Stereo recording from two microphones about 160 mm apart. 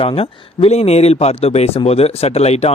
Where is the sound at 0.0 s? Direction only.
35° left (ahead or behind).